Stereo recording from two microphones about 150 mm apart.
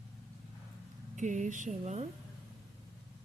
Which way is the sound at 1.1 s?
55° right (ahead or behind).